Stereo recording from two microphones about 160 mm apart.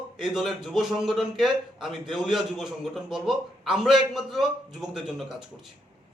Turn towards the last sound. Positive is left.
turn(degrees=-5)  # may be behind; listen again after turning